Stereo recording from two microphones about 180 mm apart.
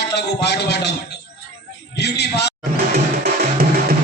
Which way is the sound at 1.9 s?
65° left (ahead or behind).